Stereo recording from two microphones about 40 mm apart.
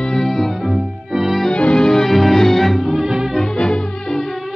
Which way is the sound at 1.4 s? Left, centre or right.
Left.